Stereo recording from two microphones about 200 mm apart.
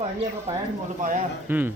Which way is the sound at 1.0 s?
40° right (ahead or behind).